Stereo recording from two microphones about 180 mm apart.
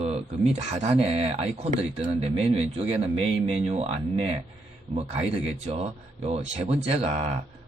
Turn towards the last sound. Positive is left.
turn(degrees=-35)  # may be behind; listen again after turning